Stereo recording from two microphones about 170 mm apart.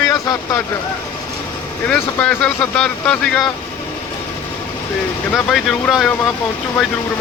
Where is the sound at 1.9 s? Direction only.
5° left (ahead or behind).